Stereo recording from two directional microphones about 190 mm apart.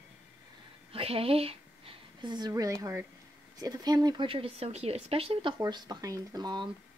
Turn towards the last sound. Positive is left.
turn(degrees=-25)  # may be behind; listen again after turning